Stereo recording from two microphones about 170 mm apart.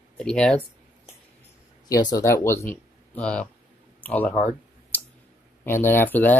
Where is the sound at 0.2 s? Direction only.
5° left (ahead or behind).